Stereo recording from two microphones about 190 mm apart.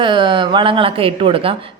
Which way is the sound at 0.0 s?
25° right (ahead or behind).